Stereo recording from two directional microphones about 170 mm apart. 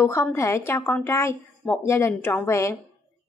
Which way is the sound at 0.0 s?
15° left (ahead or behind).